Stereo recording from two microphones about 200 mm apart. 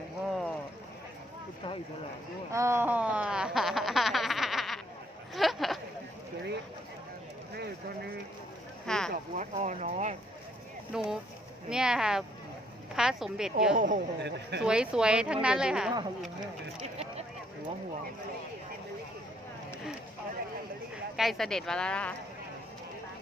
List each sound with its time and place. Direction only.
0.3 s run: centre (ahead or behind)
2.5 s a sound: 15° right (ahead or behind)
7.5 s a sound: 55° right (ahead or behind)
8.9 s speech: 5° left (ahead or behind)
9.3 s speech: 40° right (ahead or behind)
10.9 s speech: centre (ahead or behind)
13.7 s speech: 40° right (ahead or behind)
14.2 s speech: 60° right (ahead or behind)
14.6 s speech: 5° right (ahead or behind)
16.8 s a sound: 30° right (ahead or behind)
20.9 s speech: centre (ahead or behind)